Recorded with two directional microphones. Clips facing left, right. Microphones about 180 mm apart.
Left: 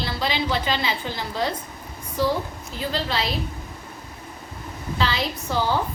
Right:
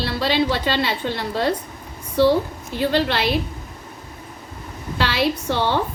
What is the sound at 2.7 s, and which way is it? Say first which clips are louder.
Speech: right 7 dB; 70° right (ahead or behind).